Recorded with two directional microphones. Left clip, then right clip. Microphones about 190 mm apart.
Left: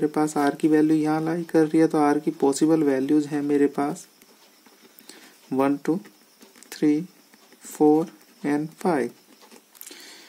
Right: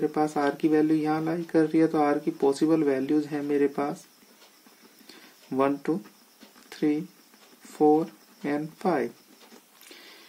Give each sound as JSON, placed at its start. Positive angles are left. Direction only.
{"t": 0.0, "sound": "speech", "side_deg": 35}
{"t": 5.0, "sound": "a sound", "side_deg": 35}
{"t": 7.7, "sound": "speech", "side_deg": 35}